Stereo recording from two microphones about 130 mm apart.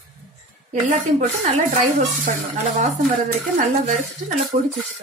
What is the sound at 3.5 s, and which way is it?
Speech, 70° right (ahead or behind).